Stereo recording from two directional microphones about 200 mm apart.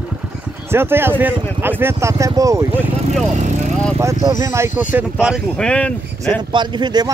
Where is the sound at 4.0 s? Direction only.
15° right (ahead or behind); by 6.4 s 5° left (ahead or behind).